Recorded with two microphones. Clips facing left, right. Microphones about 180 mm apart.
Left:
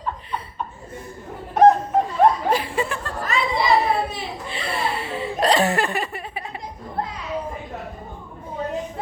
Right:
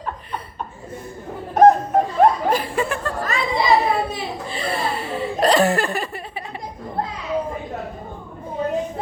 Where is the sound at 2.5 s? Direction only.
45° right (ahead or behind).